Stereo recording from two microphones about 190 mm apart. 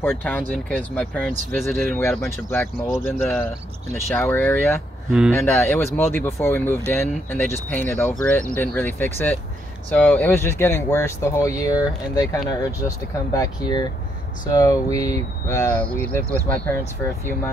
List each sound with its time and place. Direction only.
0.0 s speech: 10° left (ahead or behind)